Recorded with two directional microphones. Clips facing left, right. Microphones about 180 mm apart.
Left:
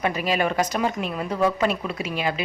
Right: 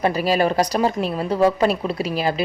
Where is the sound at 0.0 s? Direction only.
35° right (ahead or behind).